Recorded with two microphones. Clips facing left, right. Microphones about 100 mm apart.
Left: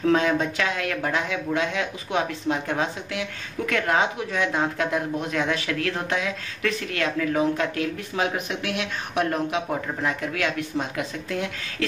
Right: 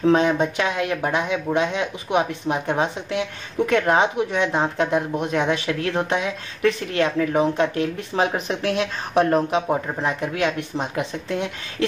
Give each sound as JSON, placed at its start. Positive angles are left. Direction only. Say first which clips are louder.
{"t": 0.0, "sound": "speech", "louder": "right 3 dB", "side_deg": -25}